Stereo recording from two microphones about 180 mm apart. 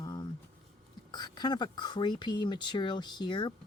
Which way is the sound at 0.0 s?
25° left (ahead or behind).